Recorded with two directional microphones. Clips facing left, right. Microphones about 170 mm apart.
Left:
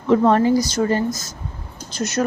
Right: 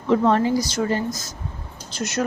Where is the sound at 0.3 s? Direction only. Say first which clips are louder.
Left 3 dB; 45° left (ahead or behind).